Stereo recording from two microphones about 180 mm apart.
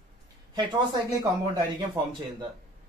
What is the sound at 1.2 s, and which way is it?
Speech, 20° right (ahead or behind).